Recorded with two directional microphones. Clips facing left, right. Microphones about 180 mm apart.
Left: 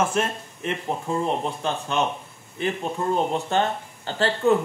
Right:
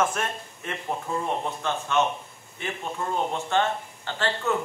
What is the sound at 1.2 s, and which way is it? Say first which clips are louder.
Speech: left 3 dB; 30° left (ahead or behind).